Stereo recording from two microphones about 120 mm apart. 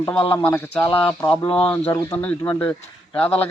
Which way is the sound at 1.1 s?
35° left (ahead or behind).